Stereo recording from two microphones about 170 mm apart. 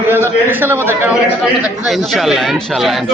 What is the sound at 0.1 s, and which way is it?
A man's voice, 15° right (ahead or behind).